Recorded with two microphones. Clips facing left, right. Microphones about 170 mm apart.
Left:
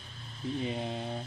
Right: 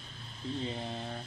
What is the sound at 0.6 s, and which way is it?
Speech, 15° left (ahead or behind).